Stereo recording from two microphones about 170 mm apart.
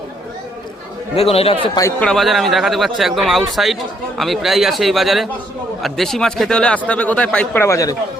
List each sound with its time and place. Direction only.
1.1 s speech: 35° left (ahead or behind)
1.6 s a man's voice: 25° left (ahead or behind)
2.0 s speech: centre (ahead or behind); by 7.9 s 20° left (ahead or behind)